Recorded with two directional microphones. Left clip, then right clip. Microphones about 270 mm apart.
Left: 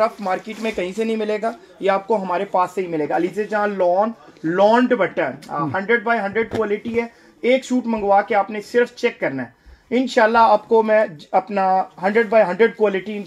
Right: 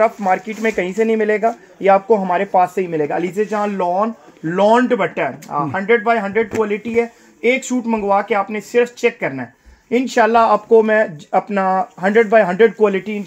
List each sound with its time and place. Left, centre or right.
0.0 s speech: right